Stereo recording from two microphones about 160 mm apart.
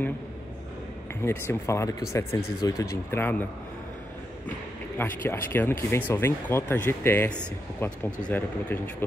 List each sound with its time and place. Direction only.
1.2 s speech: 15° left (ahead or behind)
4.9 s speech: 15° left (ahead or behind)